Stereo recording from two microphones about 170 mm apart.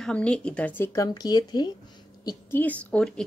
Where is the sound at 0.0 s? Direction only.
5° left (ahead or behind); by 1.7 s 25° left (ahead or behind).